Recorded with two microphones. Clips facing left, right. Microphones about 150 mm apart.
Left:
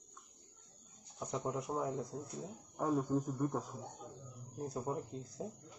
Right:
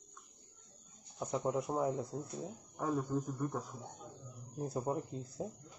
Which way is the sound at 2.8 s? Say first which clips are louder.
Left 2 dB; 10° left (ahead or behind).